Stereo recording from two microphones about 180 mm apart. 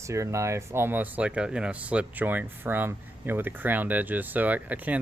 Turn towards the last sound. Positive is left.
turn(degrees=-10)  # may be behind; listen again after turning